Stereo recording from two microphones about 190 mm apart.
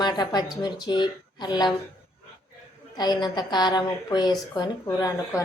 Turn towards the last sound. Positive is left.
turn(degrees=20)  # may be behind; listen again after turning